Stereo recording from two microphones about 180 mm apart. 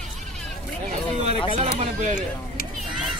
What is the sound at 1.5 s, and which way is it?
Speech, 35° right (ahead or behind).